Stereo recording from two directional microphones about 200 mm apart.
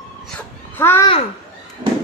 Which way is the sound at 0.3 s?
10° left (ahead or behind).